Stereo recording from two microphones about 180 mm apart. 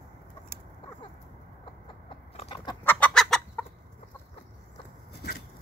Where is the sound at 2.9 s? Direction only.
5° left (ahead or behind).